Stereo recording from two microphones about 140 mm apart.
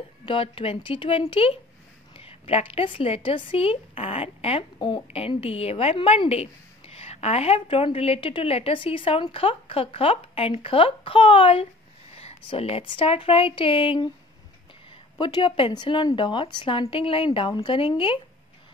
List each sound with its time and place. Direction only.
0.2 s speech: 40° left (ahead or behind)
15.1 s speech: 35° left (ahead or behind)